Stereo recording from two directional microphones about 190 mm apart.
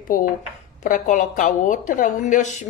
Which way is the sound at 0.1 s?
45° left (ahead or behind).